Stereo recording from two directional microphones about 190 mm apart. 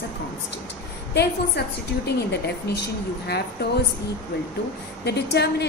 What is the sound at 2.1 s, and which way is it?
Speech, 60° left (ahead or behind).